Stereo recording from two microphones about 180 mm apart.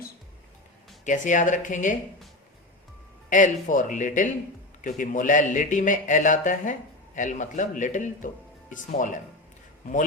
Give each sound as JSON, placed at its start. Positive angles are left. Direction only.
{"t": 1.0, "sound": "speech", "side_deg": 45}
{"t": 3.2, "sound": "speech", "side_deg": 45}